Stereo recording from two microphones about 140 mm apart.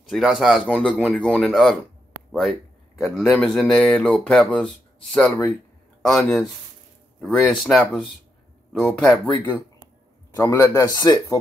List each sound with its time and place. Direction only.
0.1 s speech: centre (ahead or behind)
3.0 s speech: centre (ahead or behind)
10.3 s speech: 25° left (ahead or behind)